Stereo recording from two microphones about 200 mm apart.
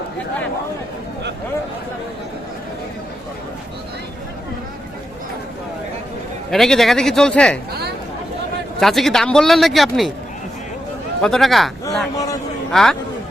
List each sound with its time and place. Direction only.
6.5 s speech: centre (ahead or behind)
7.7 s chatter: 55° right (ahead or behind)
8.8 s speech: centre (ahead or behind)
11.2 s speech: centre (ahead or behind)
12.7 s speech: centre (ahead or behind)